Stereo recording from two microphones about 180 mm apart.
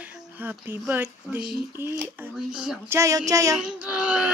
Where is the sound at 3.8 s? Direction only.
5° right (ahead or behind).